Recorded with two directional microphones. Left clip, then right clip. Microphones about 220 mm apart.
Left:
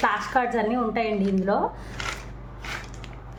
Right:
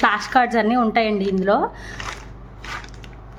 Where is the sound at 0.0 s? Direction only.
45° right (ahead or behind).